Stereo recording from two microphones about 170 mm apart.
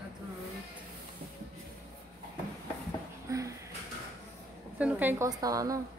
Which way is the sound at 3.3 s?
20° right (ahead or behind).